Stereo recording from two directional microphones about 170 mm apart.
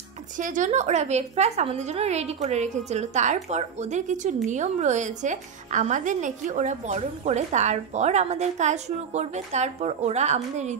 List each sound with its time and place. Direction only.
0.4 s a woman's voice: 50° right (ahead or behind)